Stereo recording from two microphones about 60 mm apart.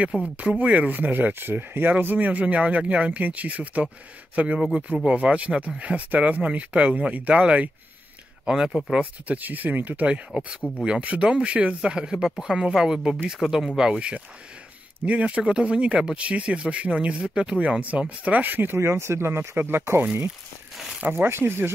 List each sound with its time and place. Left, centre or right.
0.1 s speech: centre
8.5 s speech: centre
9.4 s speech: right
18.8 s speech: right
21.1 s speech: right